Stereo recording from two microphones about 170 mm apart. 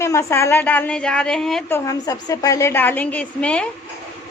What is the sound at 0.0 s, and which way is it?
A woman's voice, 15° left (ahead or behind).